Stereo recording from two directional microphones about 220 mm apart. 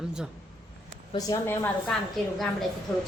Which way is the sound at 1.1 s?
15° left (ahead or behind).